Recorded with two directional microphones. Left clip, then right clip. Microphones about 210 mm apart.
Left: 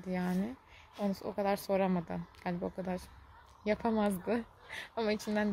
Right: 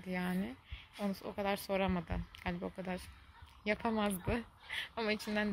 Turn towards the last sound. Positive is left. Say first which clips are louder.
# left 3 dB
turn(degrees=10)  # may be behind; listen again after turning